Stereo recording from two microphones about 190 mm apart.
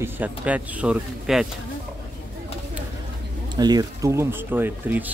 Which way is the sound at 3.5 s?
20° right (ahead or behind).